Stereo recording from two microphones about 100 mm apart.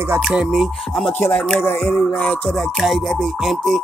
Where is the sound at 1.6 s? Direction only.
20° left (ahead or behind).